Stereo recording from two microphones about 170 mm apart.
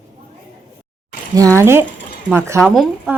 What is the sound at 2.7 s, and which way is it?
Speech, centre (ahead or behind).